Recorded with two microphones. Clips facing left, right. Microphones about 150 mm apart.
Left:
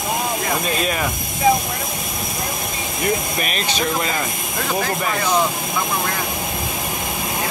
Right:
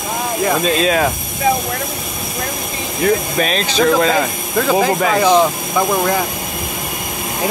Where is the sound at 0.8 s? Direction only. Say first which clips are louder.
Right 7 dB; 90° right.